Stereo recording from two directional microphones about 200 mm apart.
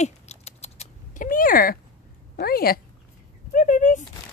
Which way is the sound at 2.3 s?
50° left (ahead or behind).